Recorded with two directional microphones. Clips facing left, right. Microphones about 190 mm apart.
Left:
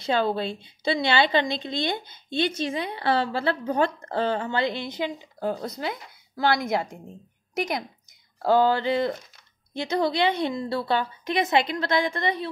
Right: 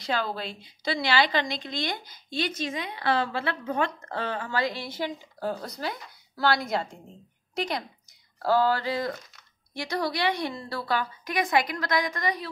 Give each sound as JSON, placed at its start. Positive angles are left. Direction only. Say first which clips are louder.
{"t": 0.0, "sound": "a woman's voice", "louder": "left 6 dB", "side_deg": 25}
{"t": 8.4, "sound": "a woman's voice", "louder": "left 3 dB", "side_deg": 20}